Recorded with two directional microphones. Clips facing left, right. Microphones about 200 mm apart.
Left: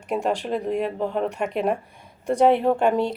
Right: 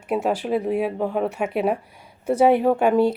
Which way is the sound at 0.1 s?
5° right (ahead or behind).